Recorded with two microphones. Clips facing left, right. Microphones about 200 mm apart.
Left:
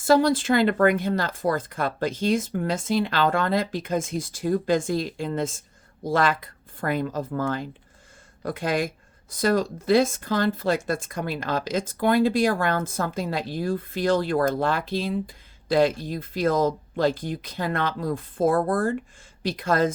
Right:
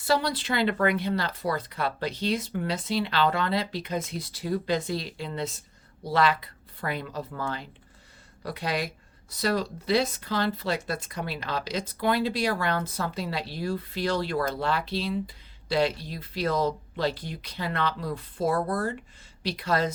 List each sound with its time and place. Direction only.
0.0 s speech: 45° left (ahead or behind)